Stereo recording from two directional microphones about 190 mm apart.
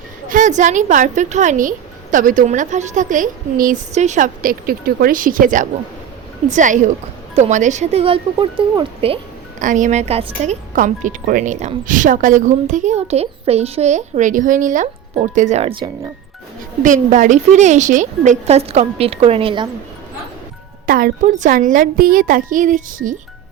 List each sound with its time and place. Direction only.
0.3 s speech: 40° right (ahead or behind)
9.6 s speech: 40° right (ahead or behind)
16.8 s speech: 40° right (ahead or behind)
20.8 s speech: 50° right (ahead or behind)